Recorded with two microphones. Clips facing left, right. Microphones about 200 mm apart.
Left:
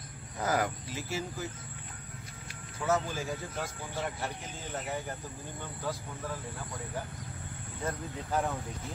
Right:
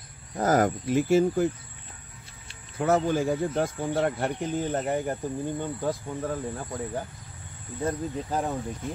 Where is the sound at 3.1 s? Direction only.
55° right (ahead or behind).